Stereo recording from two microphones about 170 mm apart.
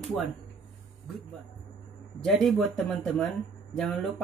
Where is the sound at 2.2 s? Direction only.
Centre (ahead or behind).